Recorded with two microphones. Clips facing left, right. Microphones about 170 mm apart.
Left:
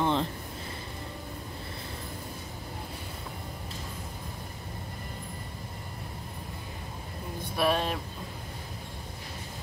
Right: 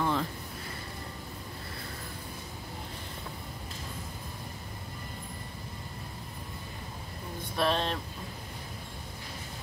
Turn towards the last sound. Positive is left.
turn(degrees=10)  # may be behind; listen again after turning